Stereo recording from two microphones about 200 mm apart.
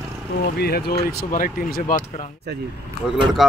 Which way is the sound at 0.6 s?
50° left (ahead or behind).